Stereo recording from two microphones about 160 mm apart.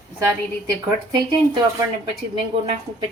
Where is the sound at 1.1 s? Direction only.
25° right (ahead or behind).